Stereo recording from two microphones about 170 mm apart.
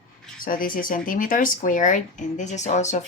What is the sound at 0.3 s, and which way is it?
Speech, 55° left (ahead or behind).